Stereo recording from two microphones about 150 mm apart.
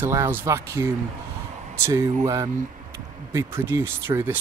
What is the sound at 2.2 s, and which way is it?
Speech, 20° right (ahead or behind).